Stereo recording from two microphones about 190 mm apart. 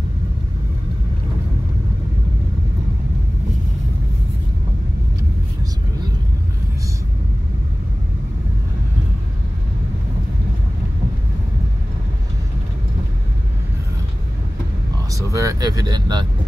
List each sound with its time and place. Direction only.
15.3 s speech: 20° right (ahead or behind)